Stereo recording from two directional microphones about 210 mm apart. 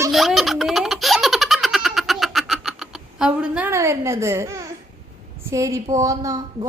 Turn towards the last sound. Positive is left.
turn(degrees=-15)  # may be behind; listen again after turning